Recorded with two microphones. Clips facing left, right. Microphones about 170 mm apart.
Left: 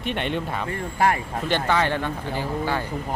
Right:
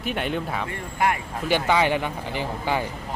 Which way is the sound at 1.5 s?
10° right (ahead or behind).